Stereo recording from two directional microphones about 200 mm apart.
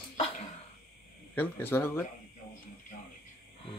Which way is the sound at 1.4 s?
10° left (ahead or behind).